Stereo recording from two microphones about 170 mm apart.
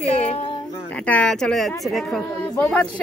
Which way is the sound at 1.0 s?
5° left (ahead or behind).